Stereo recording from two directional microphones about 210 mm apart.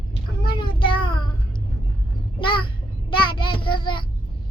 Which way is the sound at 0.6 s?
25° left (ahead or behind).